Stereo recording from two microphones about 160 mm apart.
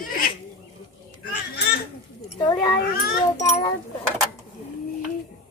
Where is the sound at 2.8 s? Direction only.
90° left.